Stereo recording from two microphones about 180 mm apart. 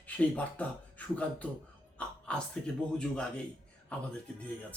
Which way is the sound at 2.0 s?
5° left (ahead or behind).